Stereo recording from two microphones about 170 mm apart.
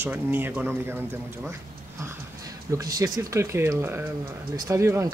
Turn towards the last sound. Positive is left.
turn(degrees=-15)  # may be behind; listen again after turning